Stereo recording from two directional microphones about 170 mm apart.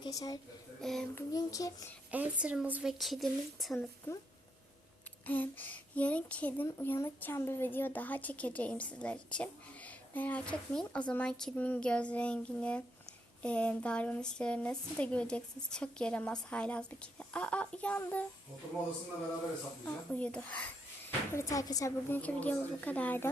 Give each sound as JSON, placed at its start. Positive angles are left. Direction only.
{"t": 0.0, "sound": "speech", "side_deg": 20}
{"t": 0.8, "sound": "speech", "side_deg": 5}
{"t": 1.1, "sound": "a child's voice", "side_deg": 20}
{"t": 2.0, "sound": "speech", "side_deg": -10}
{"t": 4.1, "sound": "speech", "side_deg": 15}
{"t": 19.8, "sound": "speech", "side_deg": 5}